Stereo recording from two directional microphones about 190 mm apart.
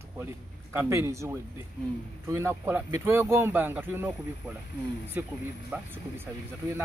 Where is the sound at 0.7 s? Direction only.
15° right (ahead or behind).